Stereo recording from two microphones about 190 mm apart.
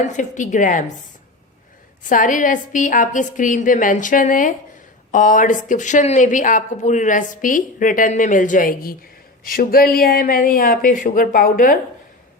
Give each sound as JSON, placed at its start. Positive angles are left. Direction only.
{"t": 0.0, "sound": "a woman's voice", "side_deg": 40}
{"t": 2.0, "sound": "speech", "side_deg": 45}